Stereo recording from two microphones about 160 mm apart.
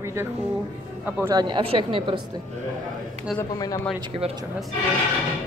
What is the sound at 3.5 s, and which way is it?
Speech, 20° left (ahead or behind).